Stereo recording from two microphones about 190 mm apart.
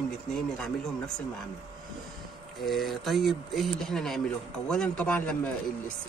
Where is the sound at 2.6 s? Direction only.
Centre (ahead or behind).